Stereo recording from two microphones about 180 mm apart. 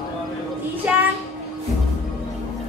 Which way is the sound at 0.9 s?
5° right (ahead or behind).